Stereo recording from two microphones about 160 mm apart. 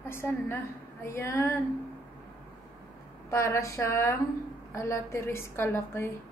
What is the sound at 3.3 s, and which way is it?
A woman's voice, 20° left (ahead or behind).